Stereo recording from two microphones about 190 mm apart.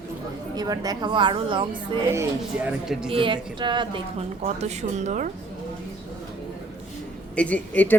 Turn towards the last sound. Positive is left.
turn(degrees=10)  # may be behind; listen again after turning